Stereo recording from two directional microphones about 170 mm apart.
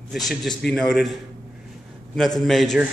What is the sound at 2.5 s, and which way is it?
Speech, centre (ahead or behind).